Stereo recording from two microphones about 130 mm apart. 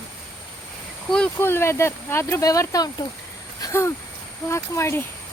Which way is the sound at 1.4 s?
20° left (ahead or behind).